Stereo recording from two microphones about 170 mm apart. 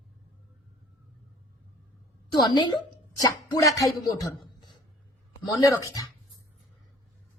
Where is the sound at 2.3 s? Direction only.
25° left (ahead or behind).